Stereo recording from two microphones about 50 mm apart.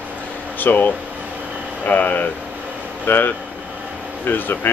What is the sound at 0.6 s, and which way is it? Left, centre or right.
Speech, left.